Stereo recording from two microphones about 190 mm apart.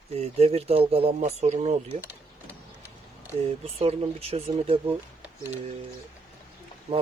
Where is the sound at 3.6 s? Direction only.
30° right (ahead or behind).